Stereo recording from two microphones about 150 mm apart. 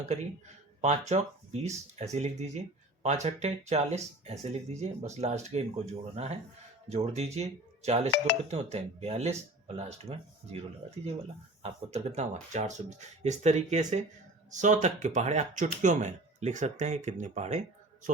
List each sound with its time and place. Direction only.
0.0 s speech: 50° right (ahead or behind)